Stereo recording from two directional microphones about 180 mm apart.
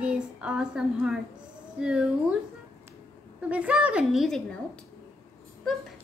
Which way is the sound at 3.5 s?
5° right (ahead or behind).